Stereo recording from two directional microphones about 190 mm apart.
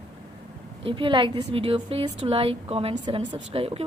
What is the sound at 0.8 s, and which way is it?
A woman's voice, 25° right (ahead or behind).